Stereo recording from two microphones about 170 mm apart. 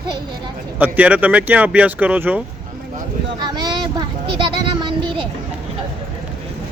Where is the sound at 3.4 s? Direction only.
25° right (ahead or behind).